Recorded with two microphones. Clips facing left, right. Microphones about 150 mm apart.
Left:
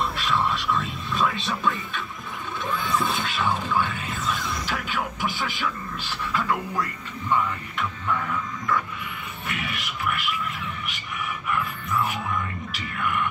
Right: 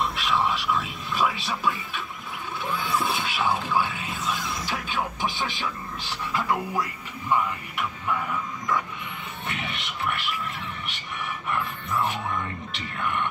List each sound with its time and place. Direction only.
0.0 s a sound: centre (ahead or behind)
2.6 s music: 10° right (ahead or behind)
9.5 s music: 25° right (ahead or behind)
11.4 s music: 30° right (ahead or behind)
12.7 s speech: 30° right (ahead or behind)